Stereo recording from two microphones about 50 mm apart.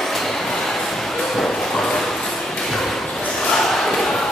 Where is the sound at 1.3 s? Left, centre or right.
Centre.